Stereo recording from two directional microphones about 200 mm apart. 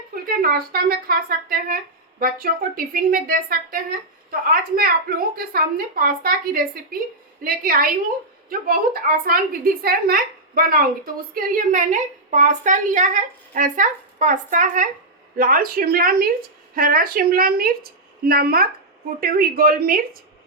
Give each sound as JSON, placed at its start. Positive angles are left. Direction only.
{"t": 0.1, "sound": "a woman's voice", "side_deg": -45}